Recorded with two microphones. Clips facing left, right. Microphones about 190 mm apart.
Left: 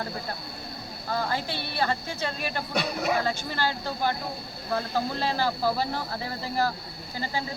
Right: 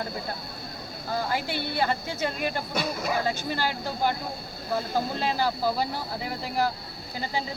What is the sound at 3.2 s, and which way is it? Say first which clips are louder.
Speech: even; 15° right (ahead or behind).